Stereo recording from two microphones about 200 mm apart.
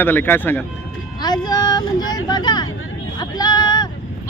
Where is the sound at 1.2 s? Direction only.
20° left (ahead or behind).